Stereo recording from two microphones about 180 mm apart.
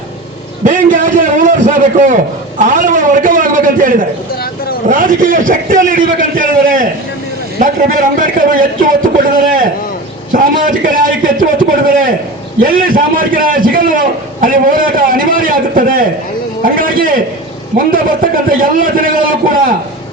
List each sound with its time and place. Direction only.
0.6 s a man's voice: 45° right (ahead or behind)